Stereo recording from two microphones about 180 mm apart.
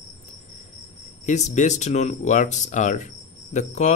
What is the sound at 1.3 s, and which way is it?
Speech, 40° left (ahead or behind).